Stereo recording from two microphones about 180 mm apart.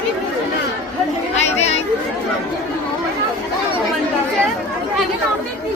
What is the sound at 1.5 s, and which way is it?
Chatter, 35° left (ahead or behind).